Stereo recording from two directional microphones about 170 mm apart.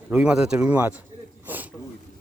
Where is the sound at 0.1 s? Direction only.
5° right (ahead or behind).